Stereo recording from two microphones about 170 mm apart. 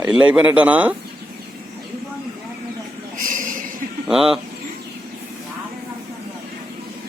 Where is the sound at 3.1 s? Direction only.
50° right (ahead or behind).